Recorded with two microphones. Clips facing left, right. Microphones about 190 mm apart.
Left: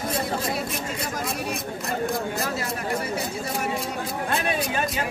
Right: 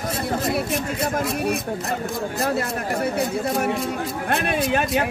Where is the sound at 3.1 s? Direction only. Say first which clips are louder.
Right 6 dB; 55° right (ahead or behind).